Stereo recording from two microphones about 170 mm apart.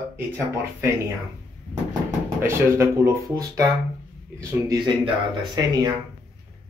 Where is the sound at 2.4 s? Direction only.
15° right (ahead or behind).